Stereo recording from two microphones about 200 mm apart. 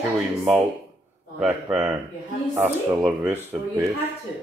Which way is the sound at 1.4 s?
5° right (ahead or behind).